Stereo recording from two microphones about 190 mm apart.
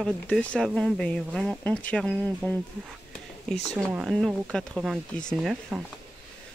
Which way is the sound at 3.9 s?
Centre (ahead or behind).